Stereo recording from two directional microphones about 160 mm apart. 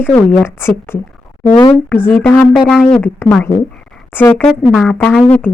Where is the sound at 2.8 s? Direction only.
5° left (ahead or behind).